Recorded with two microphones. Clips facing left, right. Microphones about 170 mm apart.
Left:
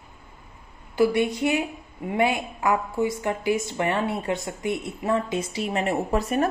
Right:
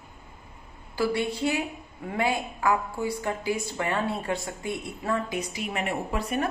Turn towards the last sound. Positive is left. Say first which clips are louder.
# left 5 dB
turn(degrees=40)  # may be behind; listen again after turning